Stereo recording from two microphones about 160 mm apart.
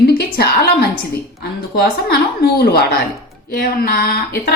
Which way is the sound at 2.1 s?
75° left (ahead or behind).